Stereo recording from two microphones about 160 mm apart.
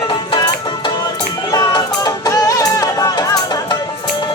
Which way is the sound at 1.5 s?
25° left (ahead or behind).